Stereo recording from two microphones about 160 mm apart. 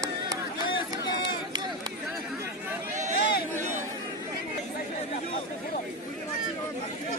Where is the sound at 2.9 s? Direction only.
50° right (ahead or behind).